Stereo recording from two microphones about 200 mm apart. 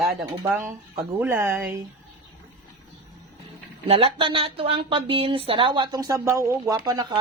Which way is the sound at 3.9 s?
25° right (ahead or behind).